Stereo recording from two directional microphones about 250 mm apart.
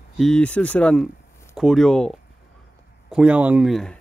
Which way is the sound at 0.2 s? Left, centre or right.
Centre.